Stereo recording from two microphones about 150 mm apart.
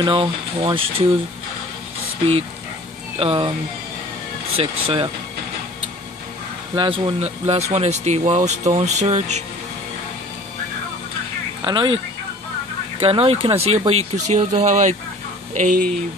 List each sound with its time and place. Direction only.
0.0 s speech: 35° right (ahead or behind)
3.2 s speech: 35° right (ahead or behind)
4.6 s speech: 35° right (ahead or behind)
6.7 s speech: 35° right (ahead or behind); by 9.4 s 50° right (ahead or behind)
11.6 s speech: 30° right (ahead or behind)
13.0 s speech: 40° right (ahead or behind); by 15.9 s 60° right (ahead or behind)